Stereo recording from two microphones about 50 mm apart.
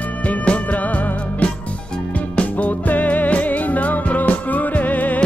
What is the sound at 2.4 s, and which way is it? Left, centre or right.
Music, left.